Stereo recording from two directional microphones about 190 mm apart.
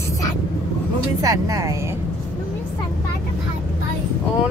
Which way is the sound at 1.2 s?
20° right (ahead or behind).